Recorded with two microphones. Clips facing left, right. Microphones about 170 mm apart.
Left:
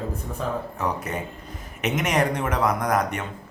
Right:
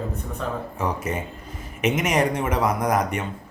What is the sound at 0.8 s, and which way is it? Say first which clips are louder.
Speech: right 1 dB; 5° right (ahead or behind).